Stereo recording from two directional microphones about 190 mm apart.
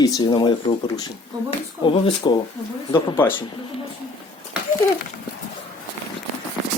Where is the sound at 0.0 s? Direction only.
20° left (ahead or behind).